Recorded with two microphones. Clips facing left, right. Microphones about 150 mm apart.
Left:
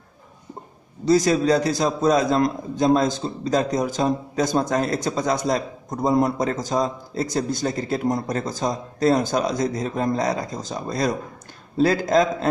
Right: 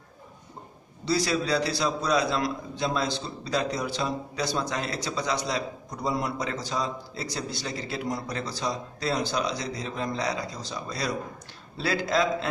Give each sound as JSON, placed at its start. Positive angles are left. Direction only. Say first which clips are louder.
{"t": 1.0, "sound": "a man's voice", "louder": "left 9 dB", "side_deg": 45}